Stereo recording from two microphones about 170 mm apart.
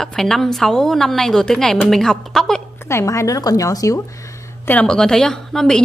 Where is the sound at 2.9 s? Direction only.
15° left (ahead or behind).